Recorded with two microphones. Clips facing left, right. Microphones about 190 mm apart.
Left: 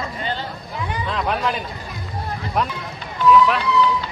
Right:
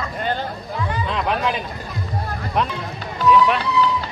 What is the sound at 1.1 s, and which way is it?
Speech, centre (ahead or behind).